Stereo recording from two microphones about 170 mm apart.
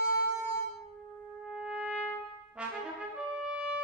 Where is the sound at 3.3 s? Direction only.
5° right (ahead or behind).